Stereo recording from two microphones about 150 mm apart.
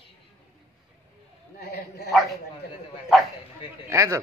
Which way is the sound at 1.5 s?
90° left.